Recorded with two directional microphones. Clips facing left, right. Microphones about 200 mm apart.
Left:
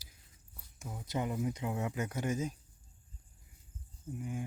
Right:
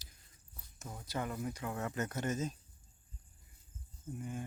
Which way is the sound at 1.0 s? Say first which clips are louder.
Left 4 dB; 20° left (ahead or behind).